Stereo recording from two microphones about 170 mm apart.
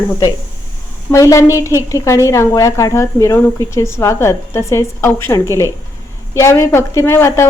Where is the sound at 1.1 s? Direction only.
20° left (ahead or behind).